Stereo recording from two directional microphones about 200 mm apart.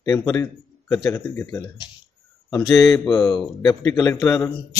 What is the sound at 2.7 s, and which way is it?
A man's voice, 15° left (ahead or behind).